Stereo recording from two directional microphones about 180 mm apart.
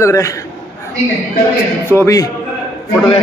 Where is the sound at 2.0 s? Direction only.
20° left (ahead or behind).